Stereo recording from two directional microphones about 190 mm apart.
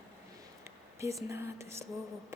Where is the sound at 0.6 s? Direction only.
15° right (ahead or behind).